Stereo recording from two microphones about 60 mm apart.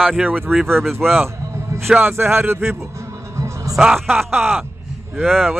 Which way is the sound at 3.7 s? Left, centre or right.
Centre.